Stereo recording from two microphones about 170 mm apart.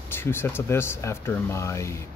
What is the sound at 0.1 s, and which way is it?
Speech, 15° left (ahead or behind).